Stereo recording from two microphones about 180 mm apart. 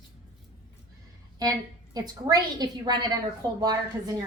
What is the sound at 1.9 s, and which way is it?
A woman's voice, 20° right (ahead or behind).